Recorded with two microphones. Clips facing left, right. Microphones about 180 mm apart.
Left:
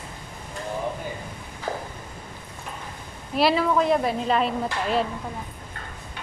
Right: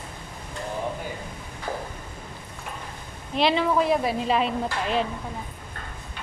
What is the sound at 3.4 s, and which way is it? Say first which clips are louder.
A woman's voice: left 1 dB; 5° left (ahead or behind).